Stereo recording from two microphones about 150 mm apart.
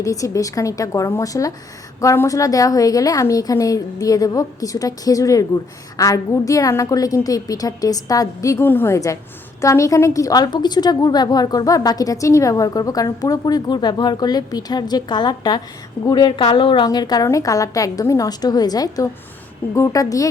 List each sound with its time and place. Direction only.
0.0 s a woman's voice: 20° left (ahead or behind)